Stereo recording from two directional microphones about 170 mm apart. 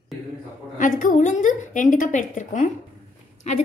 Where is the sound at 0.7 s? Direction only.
50° left (ahead or behind).